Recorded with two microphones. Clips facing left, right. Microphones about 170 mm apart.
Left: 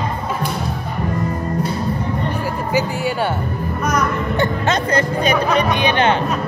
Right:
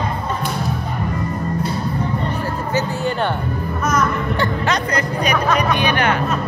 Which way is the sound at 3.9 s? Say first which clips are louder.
Right 1 dB; 20° left (ahead or behind).